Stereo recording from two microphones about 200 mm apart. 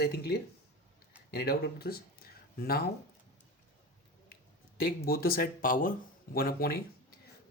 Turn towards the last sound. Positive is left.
turn(degrees=50)  # may be behind; listen again after turning